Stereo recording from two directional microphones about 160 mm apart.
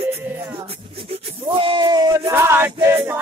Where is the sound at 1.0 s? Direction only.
35° right (ahead or behind).